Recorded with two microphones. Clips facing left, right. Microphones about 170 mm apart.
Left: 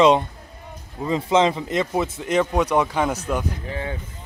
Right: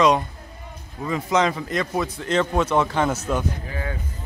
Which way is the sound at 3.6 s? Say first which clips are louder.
Left 2 dB; 25° left (ahead or behind).